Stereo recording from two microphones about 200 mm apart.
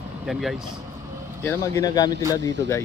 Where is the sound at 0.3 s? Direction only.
Centre (ahead or behind).